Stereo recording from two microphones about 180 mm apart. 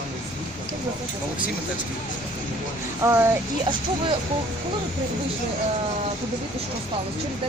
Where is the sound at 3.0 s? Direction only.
15° right (ahead or behind).